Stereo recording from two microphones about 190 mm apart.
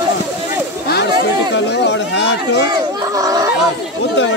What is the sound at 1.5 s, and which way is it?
Speech, 65° left (ahead or behind).